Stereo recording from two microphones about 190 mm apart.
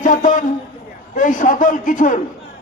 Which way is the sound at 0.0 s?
45° left (ahead or behind).